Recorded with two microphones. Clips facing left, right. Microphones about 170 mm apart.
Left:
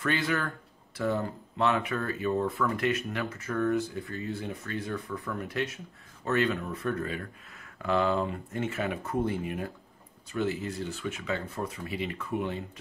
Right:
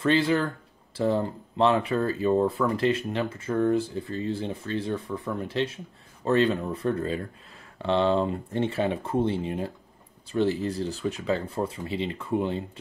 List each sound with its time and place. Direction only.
0.0 s speech: 30° right (ahead or behind)